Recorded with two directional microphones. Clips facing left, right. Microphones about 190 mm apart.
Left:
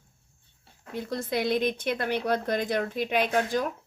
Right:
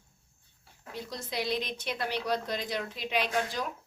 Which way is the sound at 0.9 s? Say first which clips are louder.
Left 7 dB; 55° left (ahead or behind).